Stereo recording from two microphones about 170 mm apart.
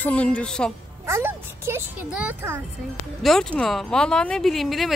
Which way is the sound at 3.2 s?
5° left (ahead or behind).